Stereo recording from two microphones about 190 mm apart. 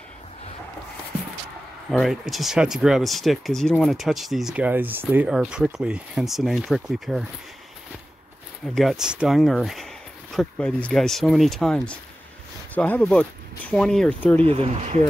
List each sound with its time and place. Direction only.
1.9 s speech: centre (ahead or behind)
8.7 s speech: centre (ahead or behind)
14.4 s speech: 35° right (ahead or behind)